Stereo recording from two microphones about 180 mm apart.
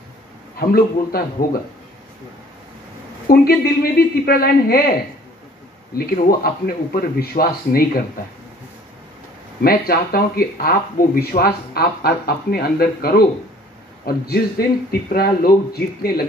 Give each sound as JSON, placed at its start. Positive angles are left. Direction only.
{"t": 0.6, "sound": "speech", "side_deg": 55}
{"t": 3.3, "sound": "speech", "side_deg": 55}
{"t": 5.9, "sound": "speech", "side_deg": 55}
{"t": 9.6, "sound": "speech", "side_deg": 55}